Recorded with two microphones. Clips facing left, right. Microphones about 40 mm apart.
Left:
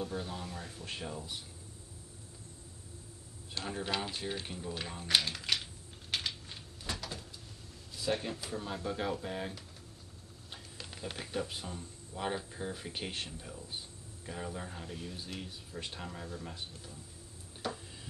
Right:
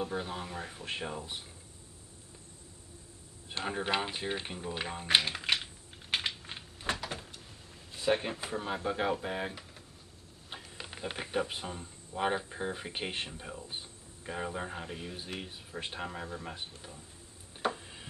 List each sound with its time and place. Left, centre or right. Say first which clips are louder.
0.0 s speech: right 3 dB; right
3.4 s typewriter: right 4 dB; right
7.9 s speech: right 4 dB; right
17.6 s a sound: right 6 dB; right